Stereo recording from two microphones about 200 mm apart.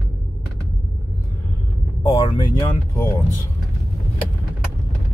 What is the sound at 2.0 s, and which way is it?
Speech, 15° left (ahead or behind).